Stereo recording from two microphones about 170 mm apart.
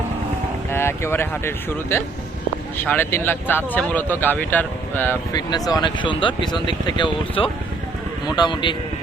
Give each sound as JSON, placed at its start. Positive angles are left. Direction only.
{"t": 0.7, "sound": "speech", "side_deg": 15}
{"t": 5.3, "sound": "speech", "side_deg": 20}